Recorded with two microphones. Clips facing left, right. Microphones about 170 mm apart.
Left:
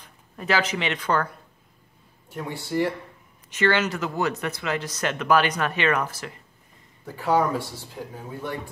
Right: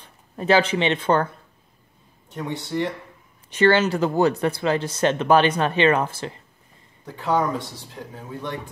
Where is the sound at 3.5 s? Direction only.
35° right (ahead or behind).